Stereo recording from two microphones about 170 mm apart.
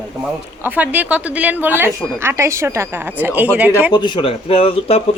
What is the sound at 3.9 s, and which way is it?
Speech, 25° left (ahead or behind).